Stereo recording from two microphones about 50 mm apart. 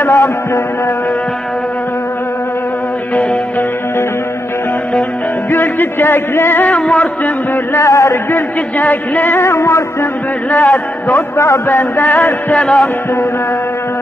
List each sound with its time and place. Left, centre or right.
0.0 s a sound: left
5.5 s speech: left
7.7 s a sound: left
8.3 s speech: left
9.4 s music: left
10.5 s speech: left
11.1 s a sound: left
11.6 s music: left
12.5 s chant: left